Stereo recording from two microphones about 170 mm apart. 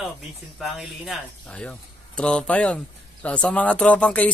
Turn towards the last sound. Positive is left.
turn(degrees=10)  # may be behind; listen again after turning